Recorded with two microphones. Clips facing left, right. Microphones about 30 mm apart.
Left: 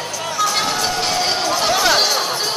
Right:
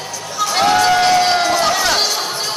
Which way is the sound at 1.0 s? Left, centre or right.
Centre.